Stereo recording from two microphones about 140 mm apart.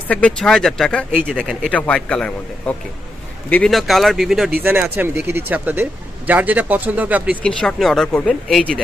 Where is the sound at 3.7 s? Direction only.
Centre (ahead or behind).